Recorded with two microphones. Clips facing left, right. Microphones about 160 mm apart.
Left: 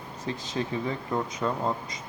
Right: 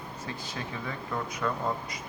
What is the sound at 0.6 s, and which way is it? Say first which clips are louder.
Speech: left 9 dB; 30° left (ahead or behind).